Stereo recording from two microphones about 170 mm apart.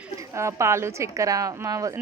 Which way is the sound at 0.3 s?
15° right (ahead or behind).